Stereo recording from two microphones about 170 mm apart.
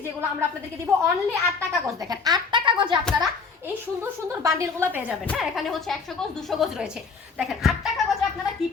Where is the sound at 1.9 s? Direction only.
20° right (ahead or behind).